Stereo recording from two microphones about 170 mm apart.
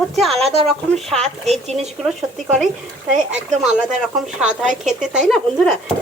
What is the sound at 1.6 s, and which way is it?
Speech, 40° right (ahead or behind).